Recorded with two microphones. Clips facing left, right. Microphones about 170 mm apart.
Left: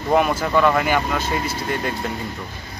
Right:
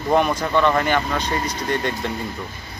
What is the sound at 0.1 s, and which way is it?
Speech, 5° left (ahead or behind).